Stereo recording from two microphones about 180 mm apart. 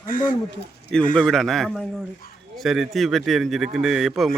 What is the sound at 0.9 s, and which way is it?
Speech, 5° left (ahead or behind).